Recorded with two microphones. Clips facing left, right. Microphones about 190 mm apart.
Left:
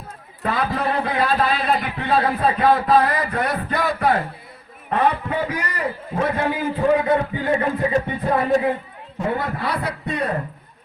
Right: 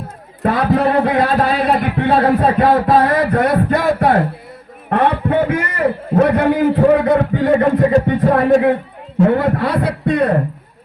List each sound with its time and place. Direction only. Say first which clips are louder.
0.4 s a man's voice: right 8 dB; 55° right (ahead or behind)
1.2 s a man's voice: right 5 dB; 40° right (ahead or behind); by 2.6 s 55° right (ahead or behind)
2.6 s a sound: right 4 dB; 45° right (ahead or behind)
3.2 s a man's voice: right 9 dB; 60° right (ahead or behind)
3.7 s speech: right 6 dB; 40° right (ahead or behind)
4.9 s a man's voice: right 5 dB; 65° right (ahead or behind)